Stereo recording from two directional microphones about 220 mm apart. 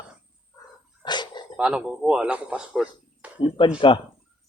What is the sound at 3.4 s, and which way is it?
Speech, 25° left (ahead or behind).